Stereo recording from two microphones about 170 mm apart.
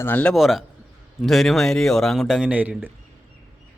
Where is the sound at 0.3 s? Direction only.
Centre (ahead or behind).